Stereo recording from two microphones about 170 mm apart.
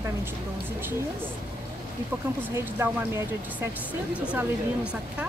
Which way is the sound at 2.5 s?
15° right (ahead or behind).